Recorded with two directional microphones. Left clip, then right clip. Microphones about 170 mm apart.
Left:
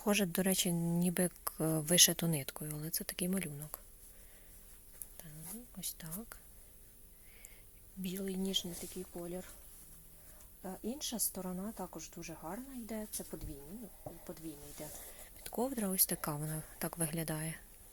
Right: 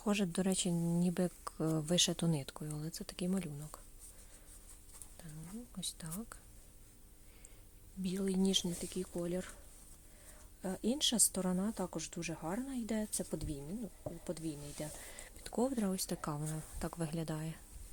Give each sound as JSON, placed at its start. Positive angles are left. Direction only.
{"t": 0.0, "sound": "speech", "side_deg": 0}
{"t": 5.7, "sound": "speech", "side_deg": -10}
{"t": 8.0, "sound": "speech", "side_deg": -25}
{"t": 10.6, "sound": "speech", "side_deg": -40}
{"t": 14.8, "sound": "speech", "side_deg": -35}
{"t": 15.4, "sound": "speech", "side_deg": -15}